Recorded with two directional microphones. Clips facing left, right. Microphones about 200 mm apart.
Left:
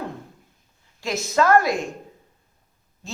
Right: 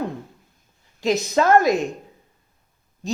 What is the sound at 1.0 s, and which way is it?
Speech, 20° right (ahead or behind).